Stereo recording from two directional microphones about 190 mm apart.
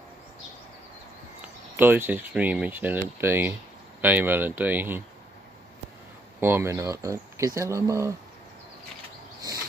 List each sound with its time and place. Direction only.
1.4 s speech: 10° right (ahead or behind)
6.4 s speech: 15° right (ahead or behind)